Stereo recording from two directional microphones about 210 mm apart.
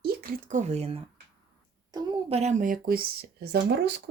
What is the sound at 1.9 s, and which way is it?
Speech, 20° right (ahead or behind).